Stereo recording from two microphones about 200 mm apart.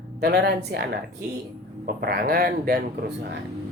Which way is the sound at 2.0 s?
50° right (ahead or behind).